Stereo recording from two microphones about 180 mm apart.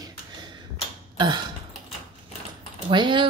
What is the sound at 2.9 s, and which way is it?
Speech, 25° right (ahead or behind).